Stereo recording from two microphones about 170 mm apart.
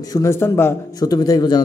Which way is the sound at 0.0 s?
20° left (ahead or behind).